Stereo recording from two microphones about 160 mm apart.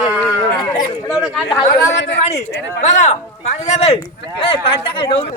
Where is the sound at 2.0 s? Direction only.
90° left.